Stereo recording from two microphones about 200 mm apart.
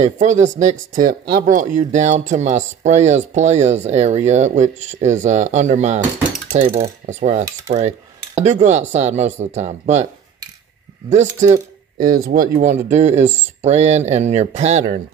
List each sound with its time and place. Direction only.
0.0 s speech: 35° right (ahead or behind)
11.1 s speech: 35° right (ahead or behind)